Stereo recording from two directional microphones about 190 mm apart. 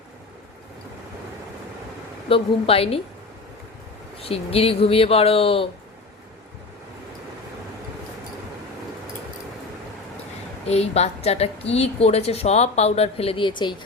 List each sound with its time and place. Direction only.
2.3 s a woman's voice: 30° left (ahead or behind)
4.2 s a woman's voice: 30° left (ahead or behind)
10.7 s a woman's voice: 35° left (ahead or behind)